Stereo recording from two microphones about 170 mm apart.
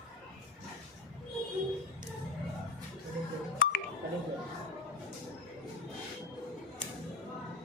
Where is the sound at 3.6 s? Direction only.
60° left (ahead or behind).